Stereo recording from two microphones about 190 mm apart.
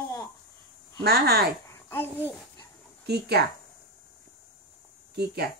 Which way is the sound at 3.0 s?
60° right (ahead or behind).